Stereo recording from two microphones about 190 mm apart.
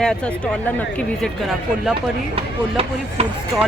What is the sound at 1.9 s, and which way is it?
Speech, 30° right (ahead or behind).